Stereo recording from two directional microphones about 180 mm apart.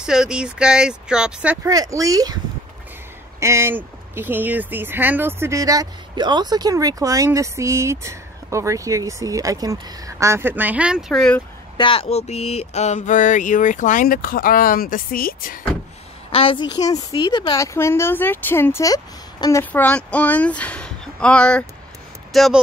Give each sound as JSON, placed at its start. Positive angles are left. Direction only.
{"t": 0.0, "sound": "speech", "side_deg": -5}
{"t": 1.7, "sound": "speech", "side_deg": -20}
{"t": 11.7, "sound": "a sound", "side_deg": 30}
{"t": 16.3, "sound": "a woman's voice", "side_deg": 30}
{"t": 17.7, "sound": "speech", "side_deg": 15}